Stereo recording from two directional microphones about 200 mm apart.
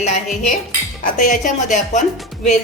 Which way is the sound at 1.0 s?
40° left (ahead or behind).